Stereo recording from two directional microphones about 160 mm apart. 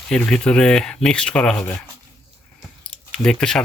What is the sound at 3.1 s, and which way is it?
Speech, 5° left (ahead or behind).